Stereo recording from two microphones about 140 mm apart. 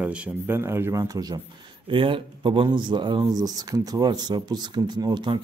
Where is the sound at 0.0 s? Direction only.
10° right (ahead or behind); by 1.4 s 25° right (ahead or behind).